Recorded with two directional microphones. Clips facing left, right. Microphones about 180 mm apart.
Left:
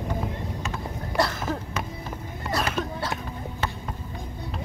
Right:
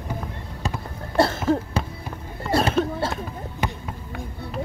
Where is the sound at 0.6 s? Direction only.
25° right (ahead or behind).